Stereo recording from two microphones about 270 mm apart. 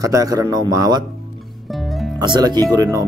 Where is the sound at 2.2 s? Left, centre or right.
Centre.